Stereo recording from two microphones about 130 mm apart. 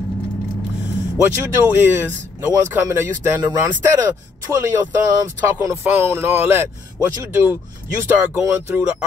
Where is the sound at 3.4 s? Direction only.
35° right (ahead or behind).